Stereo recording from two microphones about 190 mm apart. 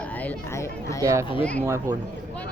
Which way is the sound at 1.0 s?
15° right (ahead or behind).